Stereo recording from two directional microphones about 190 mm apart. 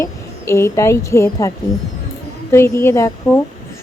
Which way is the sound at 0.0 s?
15° left (ahead or behind).